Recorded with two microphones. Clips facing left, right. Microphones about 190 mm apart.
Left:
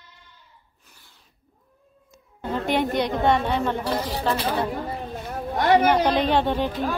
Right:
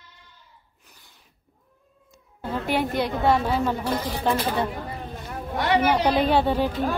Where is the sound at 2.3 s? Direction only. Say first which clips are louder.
Left 2 dB; 5° right (ahead or behind).